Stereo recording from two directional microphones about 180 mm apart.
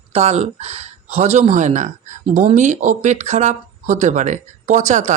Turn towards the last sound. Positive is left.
turn(degrees=-40)  # may be behind; listen again after turning